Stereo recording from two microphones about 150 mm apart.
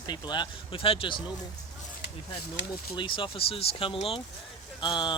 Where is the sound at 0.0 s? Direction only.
30° left (ahead or behind).